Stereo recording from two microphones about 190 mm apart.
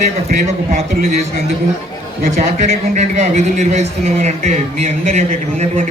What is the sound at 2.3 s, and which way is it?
A man's voice, 40° right (ahead or behind).